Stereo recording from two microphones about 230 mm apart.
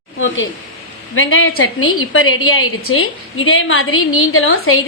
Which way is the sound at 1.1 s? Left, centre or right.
Left.